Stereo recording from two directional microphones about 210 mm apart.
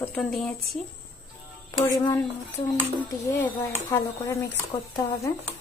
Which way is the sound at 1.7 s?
15° left (ahead or behind).